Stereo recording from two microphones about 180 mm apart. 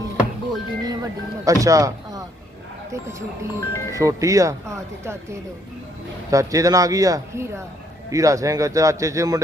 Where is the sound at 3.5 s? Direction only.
15° left (ahead or behind).